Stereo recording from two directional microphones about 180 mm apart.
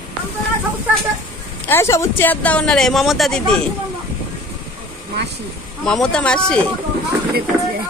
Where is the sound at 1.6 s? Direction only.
15° left (ahead or behind).